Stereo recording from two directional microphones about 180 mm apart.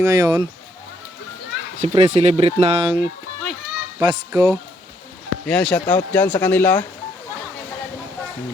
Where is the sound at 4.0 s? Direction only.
20° right (ahead or behind).